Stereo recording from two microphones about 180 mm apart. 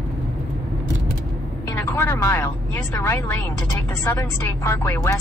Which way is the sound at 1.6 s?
15° left (ahead or behind).